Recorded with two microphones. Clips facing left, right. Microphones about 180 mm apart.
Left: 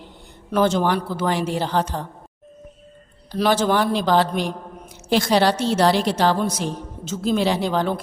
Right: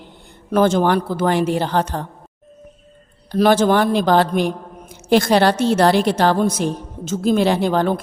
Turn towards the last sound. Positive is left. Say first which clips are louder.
# right 4 dB
turn(degrees=-50)  # may be behind; listen again after turning